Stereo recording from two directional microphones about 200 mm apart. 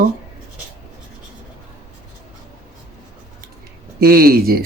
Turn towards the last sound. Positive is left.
turn(degrees=-50)  # may be behind; listen again after turning